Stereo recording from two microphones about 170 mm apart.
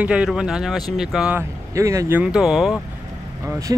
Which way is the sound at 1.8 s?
15° right (ahead or behind).